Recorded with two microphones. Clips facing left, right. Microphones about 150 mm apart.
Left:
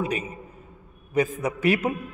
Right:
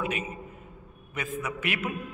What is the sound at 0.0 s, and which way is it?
A man's voice, 35° left (ahead or behind).